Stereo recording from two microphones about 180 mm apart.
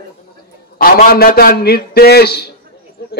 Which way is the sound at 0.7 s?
55° left (ahead or behind).